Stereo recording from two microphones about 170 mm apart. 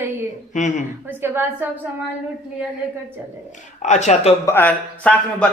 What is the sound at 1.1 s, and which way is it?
Speech, 15° right (ahead or behind).